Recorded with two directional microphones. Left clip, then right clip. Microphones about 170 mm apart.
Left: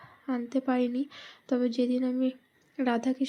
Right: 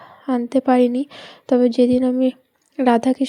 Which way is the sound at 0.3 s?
35° right (ahead or behind).